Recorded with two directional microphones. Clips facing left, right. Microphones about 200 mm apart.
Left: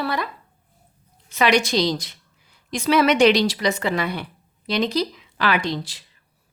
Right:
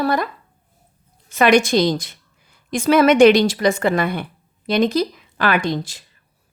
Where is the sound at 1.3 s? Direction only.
50° right (ahead or behind).